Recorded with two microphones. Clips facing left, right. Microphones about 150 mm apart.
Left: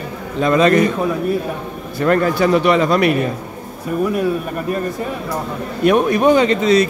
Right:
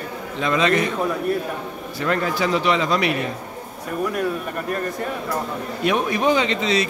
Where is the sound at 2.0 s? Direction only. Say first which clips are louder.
Left 7 dB; 50° left (ahead or behind).